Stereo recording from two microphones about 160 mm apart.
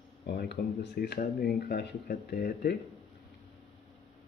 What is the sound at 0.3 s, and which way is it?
Speech, 90° left.